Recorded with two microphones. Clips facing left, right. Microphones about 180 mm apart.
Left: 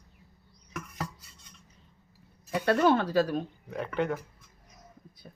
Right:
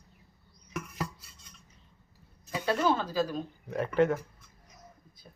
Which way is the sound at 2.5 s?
60° left (ahead or behind).